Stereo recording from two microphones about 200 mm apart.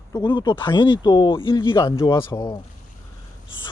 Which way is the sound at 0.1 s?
20° left (ahead or behind).